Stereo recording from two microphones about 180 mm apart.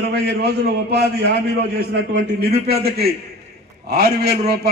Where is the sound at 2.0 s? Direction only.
70° right (ahead or behind).